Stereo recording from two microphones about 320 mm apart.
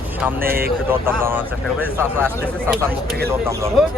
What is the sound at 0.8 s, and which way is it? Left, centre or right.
Speech, centre.